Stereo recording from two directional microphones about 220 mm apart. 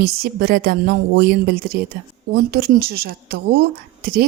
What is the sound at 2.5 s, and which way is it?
Speech, 45° right (ahead or behind).